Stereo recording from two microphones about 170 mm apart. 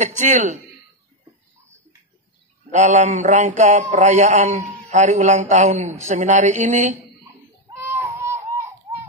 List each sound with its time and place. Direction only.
0.0 s a man's voice: 45° right (ahead or behind)
2.7 s a man's voice: 45° right (ahead or behind)
7.8 s baby cry: 15° right (ahead or behind)